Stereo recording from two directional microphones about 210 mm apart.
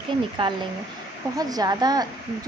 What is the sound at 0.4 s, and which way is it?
Speech, 25° right (ahead or behind).